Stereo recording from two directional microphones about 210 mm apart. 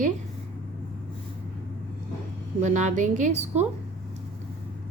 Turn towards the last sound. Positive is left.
turn(degrees=-35)  # may be behind; listen again after turning